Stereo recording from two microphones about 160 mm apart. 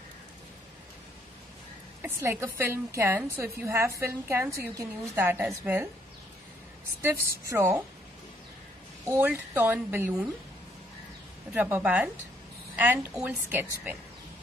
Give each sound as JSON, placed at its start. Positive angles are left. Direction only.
{"t": 2.0, "sound": "a woman's voice", "side_deg": -15}
{"t": 7.4, "sound": "a woman's voice", "side_deg": -15}
{"t": 9.0, "sound": "a woman's voice", "side_deg": -15}
{"t": 11.5, "sound": "a woman's voice", "side_deg": -10}